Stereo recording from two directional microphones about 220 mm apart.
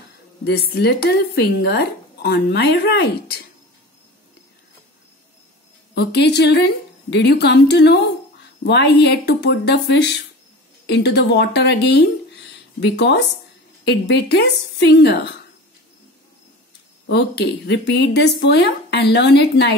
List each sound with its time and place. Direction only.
0.5 s speech: 45° left (ahead or behind)
5.9 s speech: 50° left (ahead or behind)
17.1 s speech: 50° left (ahead or behind)